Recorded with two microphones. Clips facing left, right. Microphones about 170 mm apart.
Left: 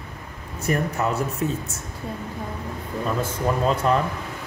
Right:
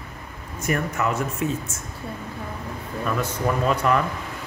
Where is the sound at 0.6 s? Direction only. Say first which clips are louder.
Left 1 dB; 35° left (ahead or behind).